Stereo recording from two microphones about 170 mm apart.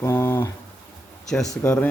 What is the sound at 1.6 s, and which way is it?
Speech, 10° left (ahead or behind).